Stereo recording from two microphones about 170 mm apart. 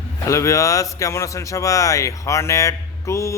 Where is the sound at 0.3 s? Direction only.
20° left (ahead or behind).